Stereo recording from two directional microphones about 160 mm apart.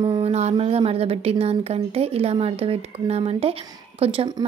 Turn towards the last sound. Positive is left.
turn(degrees=-35)  # may be behind; listen again after turning